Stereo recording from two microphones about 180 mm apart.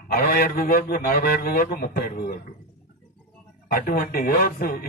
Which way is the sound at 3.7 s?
55° left (ahead or behind).